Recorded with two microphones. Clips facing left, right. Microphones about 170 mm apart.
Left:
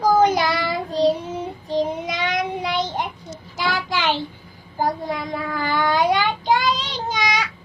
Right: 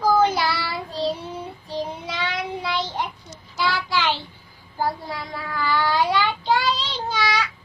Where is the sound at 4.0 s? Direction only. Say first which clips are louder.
Left 4 dB; 15° left (ahead or behind).